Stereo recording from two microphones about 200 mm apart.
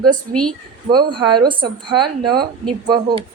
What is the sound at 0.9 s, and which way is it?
A woman's voice, 20° right (ahead or behind).